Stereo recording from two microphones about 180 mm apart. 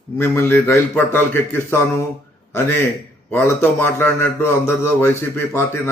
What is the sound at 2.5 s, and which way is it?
A man's voice, 10° left (ahead or behind).